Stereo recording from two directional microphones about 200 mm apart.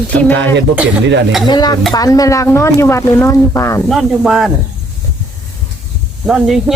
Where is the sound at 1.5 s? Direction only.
20° left (ahead or behind).